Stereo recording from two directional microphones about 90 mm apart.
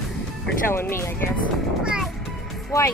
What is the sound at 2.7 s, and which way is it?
Speech, 40° left (ahead or behind).